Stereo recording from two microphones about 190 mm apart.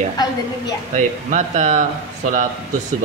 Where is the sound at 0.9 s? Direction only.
40° right (ahead or behind).